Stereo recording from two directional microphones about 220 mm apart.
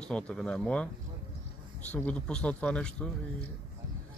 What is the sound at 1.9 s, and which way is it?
Speech, 5° left (ahead or behind).